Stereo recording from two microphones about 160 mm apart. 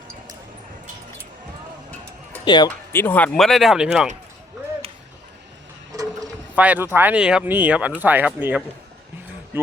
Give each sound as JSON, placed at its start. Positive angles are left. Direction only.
{"t": 2.4, "sound": "speech", "side_deg": 25}
{"t": 2.6, "sound": "speech", "side_deg": 10}
{"t": 6.6, "sound": "speech", "side_deg": -10}